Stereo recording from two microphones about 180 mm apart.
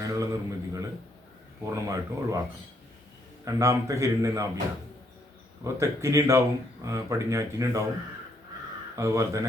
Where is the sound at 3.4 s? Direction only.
15° right (ahead or behind).